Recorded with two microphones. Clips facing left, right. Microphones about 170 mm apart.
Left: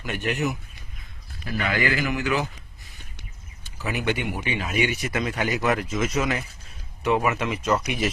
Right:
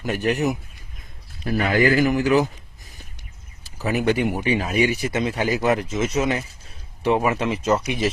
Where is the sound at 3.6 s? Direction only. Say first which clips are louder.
Right 6 dB; 40° right (ahead or behind).